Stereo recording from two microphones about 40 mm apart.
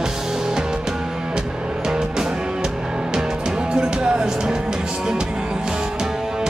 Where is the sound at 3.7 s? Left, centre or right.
Right.